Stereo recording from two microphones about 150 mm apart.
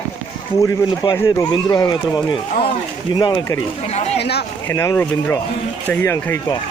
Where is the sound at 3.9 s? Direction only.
45° left (ahead or behind).